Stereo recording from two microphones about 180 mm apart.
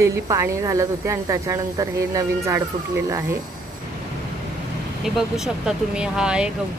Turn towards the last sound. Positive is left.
turn(degrees=-5)  # may be behind; listen again after turning